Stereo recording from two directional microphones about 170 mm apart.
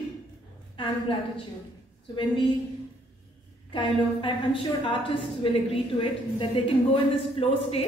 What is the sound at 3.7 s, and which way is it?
Speech, 30° left (ahead or behind).